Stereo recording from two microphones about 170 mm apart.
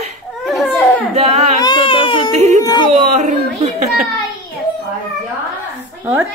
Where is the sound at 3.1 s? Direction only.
40° right (ahead or behind).